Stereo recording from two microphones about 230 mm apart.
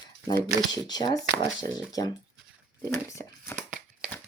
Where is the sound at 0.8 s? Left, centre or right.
Centre.